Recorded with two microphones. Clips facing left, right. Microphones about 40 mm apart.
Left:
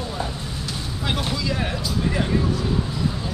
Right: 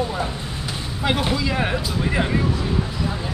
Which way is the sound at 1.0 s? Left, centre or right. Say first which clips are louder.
Right 4 dB; centre.